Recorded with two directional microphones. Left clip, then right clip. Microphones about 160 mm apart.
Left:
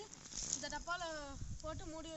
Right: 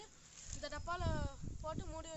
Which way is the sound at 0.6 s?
45° right (ahead or behind).